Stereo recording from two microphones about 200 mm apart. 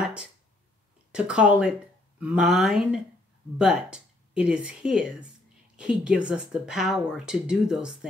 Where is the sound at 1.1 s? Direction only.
5° right (ahead or behind).